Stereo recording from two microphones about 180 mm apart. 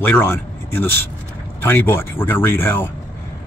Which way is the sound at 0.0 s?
10° left (ahead or behind).